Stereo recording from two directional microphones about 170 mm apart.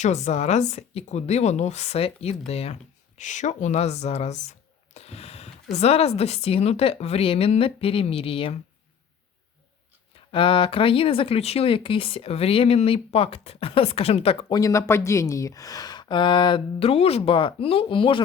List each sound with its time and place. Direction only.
0.0 s speech: 45° left (ahead or behind)
4.9 s a sound: 40° left (ahead or behind)
5.7 s speech: 40° left (ahead or behind)
10.2 s speech: 30° left (ahead or behind)
14.5 s speech: 20° left (ahead or behind)